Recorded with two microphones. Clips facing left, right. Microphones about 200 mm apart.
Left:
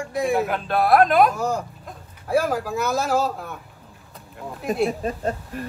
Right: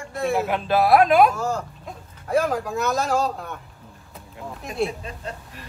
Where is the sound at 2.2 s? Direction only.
5° left (ahead or behind).